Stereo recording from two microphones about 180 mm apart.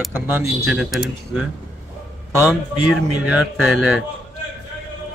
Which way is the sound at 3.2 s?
5° right (ahead or behind).